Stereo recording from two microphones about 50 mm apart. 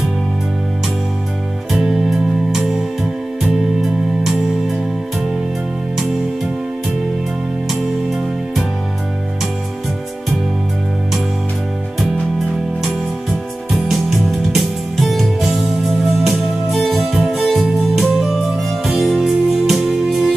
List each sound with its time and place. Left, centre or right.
1.7 s music: centre
8.1 s music: centre
12.8 s music: centre